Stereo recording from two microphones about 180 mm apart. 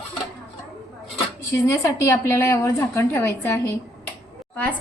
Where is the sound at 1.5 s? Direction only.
15° left (ahead or behind).